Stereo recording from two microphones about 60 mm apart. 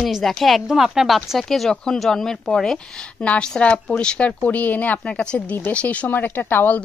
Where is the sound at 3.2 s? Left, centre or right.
Left.